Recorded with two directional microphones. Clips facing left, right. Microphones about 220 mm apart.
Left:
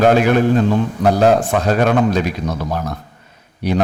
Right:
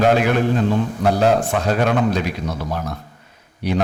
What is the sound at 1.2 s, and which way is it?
Speech, 45° left (ahead or behind).